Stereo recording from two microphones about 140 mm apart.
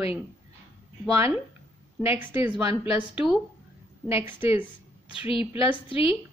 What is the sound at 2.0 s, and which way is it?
A woman's voice, 15° right (ahead or behind).